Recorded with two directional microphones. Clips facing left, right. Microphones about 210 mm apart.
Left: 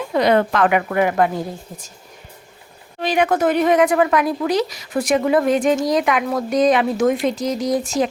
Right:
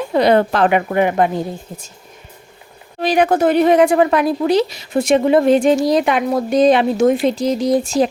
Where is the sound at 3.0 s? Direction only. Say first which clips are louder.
Right 3 dB; 35° right (ahead or behind).